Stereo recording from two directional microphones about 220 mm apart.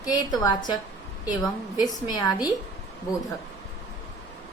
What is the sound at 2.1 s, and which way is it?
Speech, 20° left (ahead or behind).